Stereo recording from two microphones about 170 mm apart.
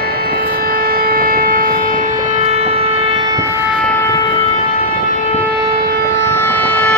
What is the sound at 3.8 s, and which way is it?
Civil defense siren, 15° left (ahead or behind).